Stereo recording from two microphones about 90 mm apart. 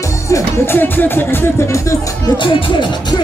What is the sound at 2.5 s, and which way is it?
Speech, 70° left (ahead or behind).